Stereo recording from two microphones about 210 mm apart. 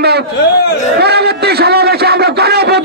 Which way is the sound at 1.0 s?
50° right (ahead or behind).